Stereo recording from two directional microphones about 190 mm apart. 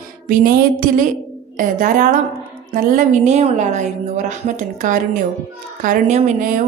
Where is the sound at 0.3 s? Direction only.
45° right (ahead or behind).